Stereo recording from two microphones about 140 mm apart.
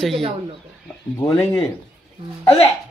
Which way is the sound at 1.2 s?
20° left (ahead or behind).